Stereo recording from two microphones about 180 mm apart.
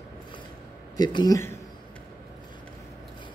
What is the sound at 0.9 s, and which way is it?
Speech, 20° left (ahead or behind).